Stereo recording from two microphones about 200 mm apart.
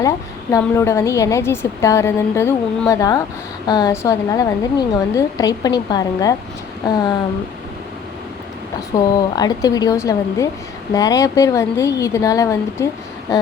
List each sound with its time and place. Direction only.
0.5 s a woman's voice: 15° left (ahead or behind)
9.1 s a woman's voice: 20° left (ahead or behind)